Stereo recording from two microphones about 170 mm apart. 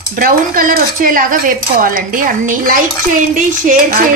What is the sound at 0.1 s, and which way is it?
Speech, 55° right (ahead or behind).